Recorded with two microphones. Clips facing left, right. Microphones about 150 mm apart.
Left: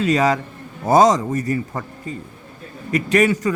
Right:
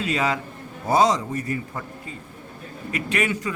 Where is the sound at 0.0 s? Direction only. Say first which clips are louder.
Left 7 dB; 40° left (ahead or behind).